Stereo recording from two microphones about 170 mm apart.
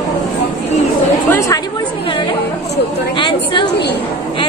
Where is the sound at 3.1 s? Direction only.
30° left (ahead or behind).